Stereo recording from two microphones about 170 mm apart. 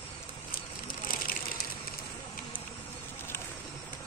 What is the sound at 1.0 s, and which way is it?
Vehicle, 55° left (ahead or behind).